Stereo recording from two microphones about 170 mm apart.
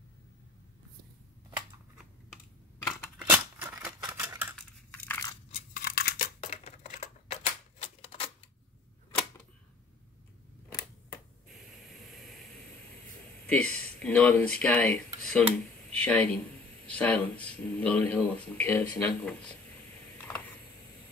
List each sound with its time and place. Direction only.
3.2 s scissors: 10° right (ahead or behind)
4.0 s typewriter: 15° right (ahead or behind)
4.6 s computer keyboard: 10° left (ahead or behind)
5.7 s scissors: 60° left (ahead or behind)
6.4 s a sound: 45° left (ahead or behind)
7.8 s typewriter: 35° left (ahead or behind)
11.9 s vehicle: centre (ahead or behind)
13.5 s speech: 5° left (ahead or behind)
20.2 s mechanisms: 10° left (ahead or behind)